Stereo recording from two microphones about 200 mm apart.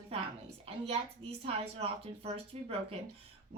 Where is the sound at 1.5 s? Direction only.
30° right (ahead or behind).